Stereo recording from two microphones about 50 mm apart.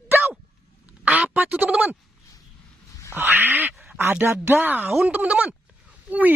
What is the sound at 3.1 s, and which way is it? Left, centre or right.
Speech, right.